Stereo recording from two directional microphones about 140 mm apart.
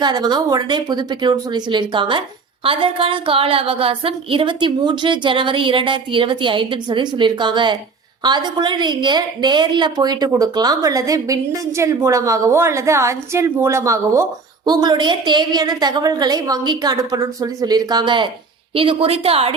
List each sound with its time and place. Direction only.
0.0 s a woman's voice: 30° right (ahead or behind)